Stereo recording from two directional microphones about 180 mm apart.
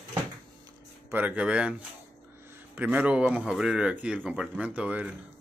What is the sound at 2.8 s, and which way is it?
Speech, 10° right (ahead or behind).